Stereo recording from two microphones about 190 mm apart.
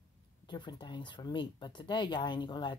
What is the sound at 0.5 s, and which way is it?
Speech, 25° left (ahead or behind).